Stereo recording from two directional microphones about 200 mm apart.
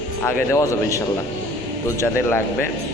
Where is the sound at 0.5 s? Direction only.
15° left (ahead or behind).